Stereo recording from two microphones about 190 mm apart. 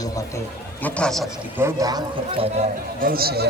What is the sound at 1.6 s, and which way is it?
A man's voice, 15° right (ahead or behind).